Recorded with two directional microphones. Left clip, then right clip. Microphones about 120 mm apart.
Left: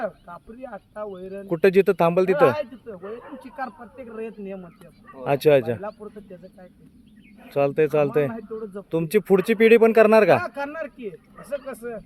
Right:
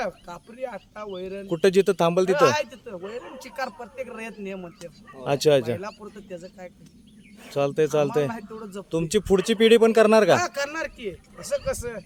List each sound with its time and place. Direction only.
0.0 s speech: 45° right (ahead or behind)
1.5 s speech: centre (ahead or behind)
3.4 s speech: 45° right (ahead or behind)
5.1 s speech: 5° right (ahead or behind)
7.4 s speech: 5° right (ahead or behind)
8.3 s speech: 50° right (ahead or behind)
8.9 s speech: centre (ahead or behind)
10.4 s speech: 50° right (ahead or behind)